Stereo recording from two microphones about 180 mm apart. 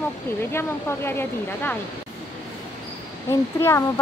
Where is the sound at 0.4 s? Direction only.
15° left (ahead or behind).